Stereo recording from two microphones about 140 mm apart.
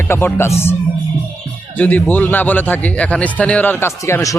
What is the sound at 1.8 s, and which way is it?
A man's voice, 15° left (ahead or behind).